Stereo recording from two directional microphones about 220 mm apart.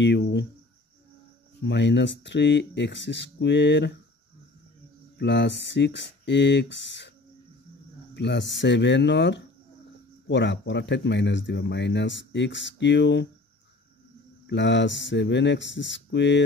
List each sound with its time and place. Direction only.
0.0 s speech: 55° left (ahead or behind)
1.6 s speech: 55° left (ahead or behind)
5.2 s speech: 50° left (ahead or behind)
8.1 s speech: 50° left (ahead or behind)
14.5 s speech: 55° left (ahead or behind)